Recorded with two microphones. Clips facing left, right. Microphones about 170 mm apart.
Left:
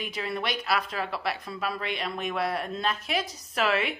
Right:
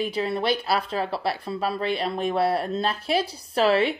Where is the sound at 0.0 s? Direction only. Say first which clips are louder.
Right 7 dB; 30° right (ahead or behind).